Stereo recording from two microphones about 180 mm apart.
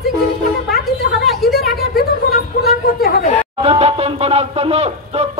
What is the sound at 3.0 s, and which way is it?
Chatter, 60° left (ahead or behind).